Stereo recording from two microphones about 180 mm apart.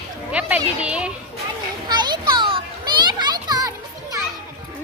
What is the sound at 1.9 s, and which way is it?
Children playing, 25° right (ahead or behind).